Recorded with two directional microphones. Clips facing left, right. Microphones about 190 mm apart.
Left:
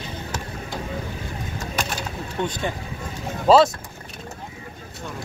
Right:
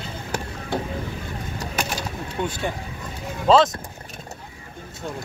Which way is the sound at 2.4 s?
10° right (ahead or behind).